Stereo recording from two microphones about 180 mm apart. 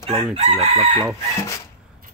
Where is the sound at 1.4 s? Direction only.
15° left (ahead or behind).